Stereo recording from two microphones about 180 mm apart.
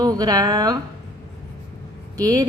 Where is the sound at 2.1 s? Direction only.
20° right (ahead or behind).